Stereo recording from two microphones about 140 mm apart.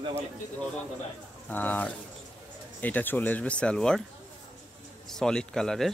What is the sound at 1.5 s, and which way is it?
Speech, 10° left (ahead or behind).